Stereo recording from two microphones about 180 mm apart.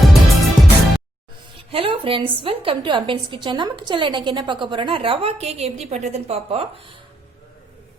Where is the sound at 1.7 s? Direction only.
30° right (ahead or behind).